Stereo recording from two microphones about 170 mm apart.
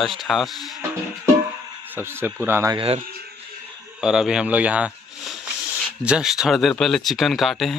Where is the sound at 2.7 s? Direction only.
35° right (ahead or behind).